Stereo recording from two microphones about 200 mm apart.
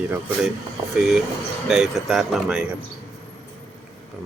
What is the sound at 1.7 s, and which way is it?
Speech, centre (ahead or behind).